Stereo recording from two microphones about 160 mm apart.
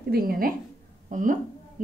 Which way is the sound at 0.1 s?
65° right (ahead or behind).